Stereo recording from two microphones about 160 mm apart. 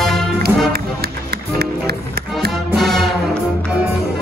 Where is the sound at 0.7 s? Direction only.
75° right (ahead or behind).